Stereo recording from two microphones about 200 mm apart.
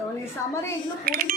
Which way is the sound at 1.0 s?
45° right (ahead or behind).